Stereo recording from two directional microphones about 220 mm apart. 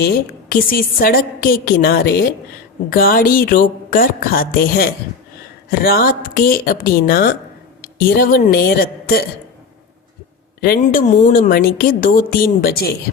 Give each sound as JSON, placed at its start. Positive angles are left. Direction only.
{"t": 0.0, "sound": "a woman's voice", "side_deg": 45}
{"t": 10.8, "sound": "a woman's voice", "side_deg": 35}